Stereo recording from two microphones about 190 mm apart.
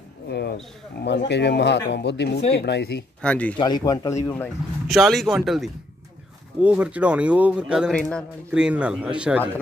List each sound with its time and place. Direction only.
0.3 s a sound: 60° left (ahead or behind)
1.0 s speech: 65° left (ahead or behind)
3.2 s speech: 5° left (ahead or behind)
3.5 s speech: 20° left (ahead or behind)
4.8 s a man's voice: centre (ahead or behind)